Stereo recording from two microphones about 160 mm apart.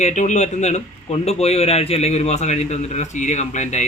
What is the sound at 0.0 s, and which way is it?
A man's voice, 45° left (ahead or behind).